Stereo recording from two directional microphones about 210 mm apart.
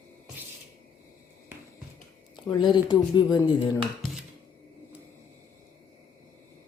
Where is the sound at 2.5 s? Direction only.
20° left (ahead or behind).